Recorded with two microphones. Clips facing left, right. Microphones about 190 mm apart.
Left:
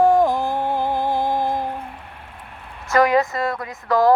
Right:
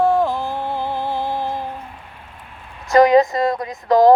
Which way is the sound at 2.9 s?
20° right (ahead or behind).